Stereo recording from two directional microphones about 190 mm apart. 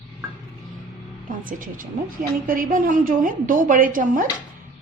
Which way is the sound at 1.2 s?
45° right (ahead or behind).